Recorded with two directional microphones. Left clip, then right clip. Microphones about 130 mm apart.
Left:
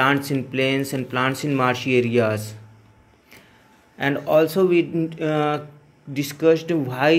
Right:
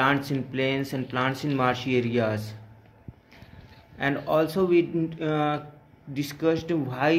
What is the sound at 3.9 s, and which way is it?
Speech, 25° left (ahead or behind).